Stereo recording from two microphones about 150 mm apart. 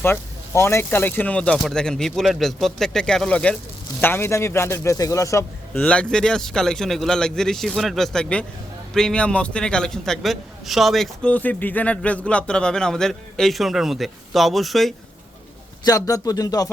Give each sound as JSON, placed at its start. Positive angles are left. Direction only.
{"t": 0.0, "sound": "a man's voice", "side_deg": 15}
{"t": 5.7, "sound": "a man's voice", "side_deg": 5}
{"t": 15.8, "sound": "a man's voice", "side_deg": 25}